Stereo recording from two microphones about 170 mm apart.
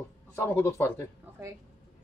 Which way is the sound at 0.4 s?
15° left (ahead or behind).